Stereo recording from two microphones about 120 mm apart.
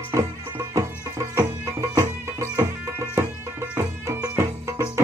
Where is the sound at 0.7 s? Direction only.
30° right (ahead or behind).